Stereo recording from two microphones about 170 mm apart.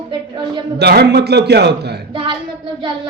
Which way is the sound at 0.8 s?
75° right (ahead or behind).